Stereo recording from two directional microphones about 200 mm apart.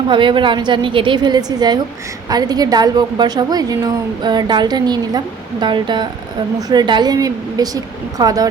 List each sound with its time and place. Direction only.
0.1 s a woman's voice: 25° right (ahead or behind)